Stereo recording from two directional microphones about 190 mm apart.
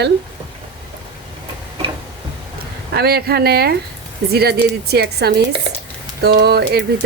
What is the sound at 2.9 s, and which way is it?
Speech, 55° right (ahead or behind).